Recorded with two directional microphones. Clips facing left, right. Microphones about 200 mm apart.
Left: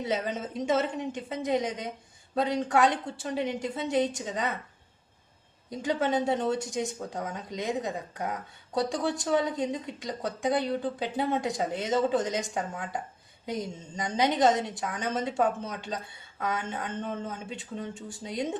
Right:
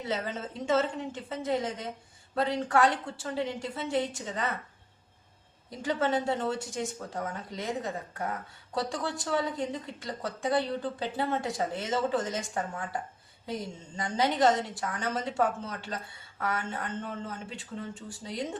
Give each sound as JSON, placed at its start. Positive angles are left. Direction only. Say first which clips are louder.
{"t": 0.1, "sound": "speech", "louder": "left 1 dB", "side_deg": 15}
{"t": 5.8, "sound": "speech", "louder": "left 1 dB", "side_deg": 15}